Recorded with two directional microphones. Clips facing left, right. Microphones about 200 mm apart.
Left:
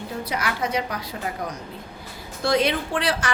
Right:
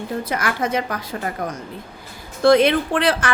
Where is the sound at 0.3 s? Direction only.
50° right (ahead or behind).